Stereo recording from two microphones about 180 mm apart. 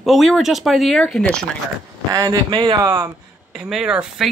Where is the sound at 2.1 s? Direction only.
25° right (ahead or behind).